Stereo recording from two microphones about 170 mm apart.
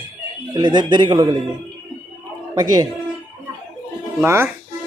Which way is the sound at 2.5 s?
20° right (ahead or behind).